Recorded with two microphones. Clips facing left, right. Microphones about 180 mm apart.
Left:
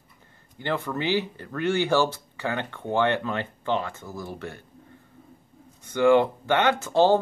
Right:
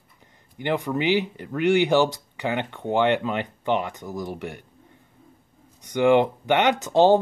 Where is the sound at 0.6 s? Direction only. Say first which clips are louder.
Right 4 dB; 15° right (ahead or behind).